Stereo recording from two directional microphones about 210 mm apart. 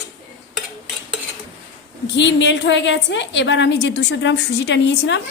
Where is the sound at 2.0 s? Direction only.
55° left (ahead or behind).